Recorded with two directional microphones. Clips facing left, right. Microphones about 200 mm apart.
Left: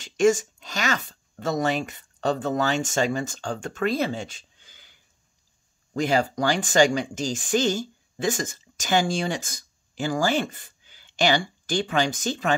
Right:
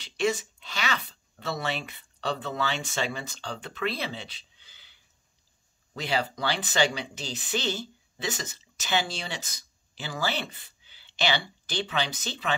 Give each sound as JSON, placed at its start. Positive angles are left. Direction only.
{"t": 0.0, "sound": "speech", "side_deg": 45}